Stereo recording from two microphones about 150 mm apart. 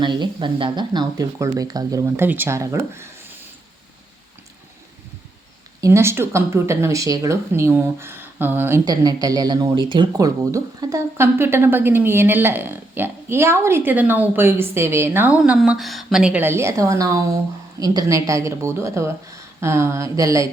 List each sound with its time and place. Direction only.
0.0 s speech: 30° right (ahead or behind)
5.8 s speech: 20° right (ahead or behind)
8.8 s speech: 25° right (ahead or behind)